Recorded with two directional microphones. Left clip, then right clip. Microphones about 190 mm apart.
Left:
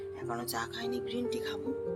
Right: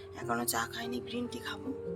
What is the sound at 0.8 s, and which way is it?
Speech, 5° right (ahead or behind).